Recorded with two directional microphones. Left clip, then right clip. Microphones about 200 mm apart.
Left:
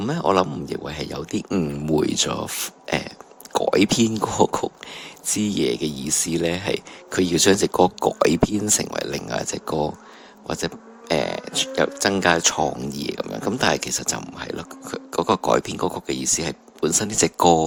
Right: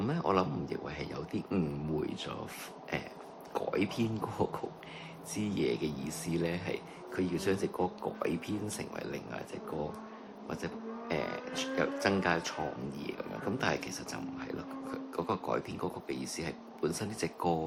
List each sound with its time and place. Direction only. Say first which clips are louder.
0.0 s speech: left 11 dB; 40° left (ahead or behind)
2.0 s speech: left 16 dB; 55° left (ahead or behind)